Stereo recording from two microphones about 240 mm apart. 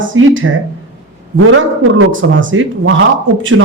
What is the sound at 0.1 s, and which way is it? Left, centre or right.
Speech, right.